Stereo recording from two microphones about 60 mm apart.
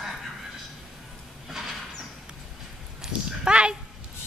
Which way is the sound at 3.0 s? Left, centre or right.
Centre.